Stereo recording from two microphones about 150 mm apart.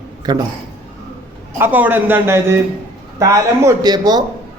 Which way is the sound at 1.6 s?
10° right (ahead or behind).